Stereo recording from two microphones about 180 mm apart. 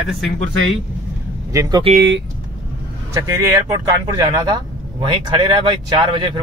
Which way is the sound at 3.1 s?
15° right (ahead or behind).